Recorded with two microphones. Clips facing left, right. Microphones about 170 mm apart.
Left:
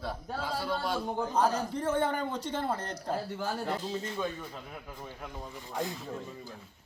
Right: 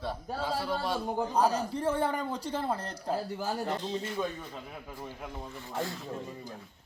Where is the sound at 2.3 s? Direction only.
35° right (ahead or behind).